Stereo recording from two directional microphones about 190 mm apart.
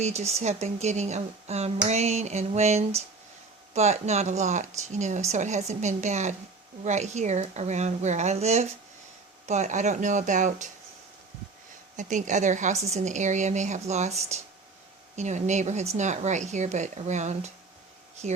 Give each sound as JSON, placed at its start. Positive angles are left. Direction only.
{"t": 0.0, "sound": "speech", "side_deg": -35}
{"t": 11.9, "sound": "speech", "side_deg": -40}